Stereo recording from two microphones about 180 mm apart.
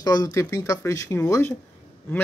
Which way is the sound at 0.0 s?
20° left (ahead or behind).